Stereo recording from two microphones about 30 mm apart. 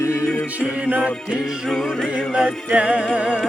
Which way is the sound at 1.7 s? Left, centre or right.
Centre.